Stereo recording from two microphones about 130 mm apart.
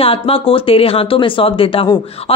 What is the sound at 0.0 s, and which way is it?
Speech, 45° left (ahead or behind).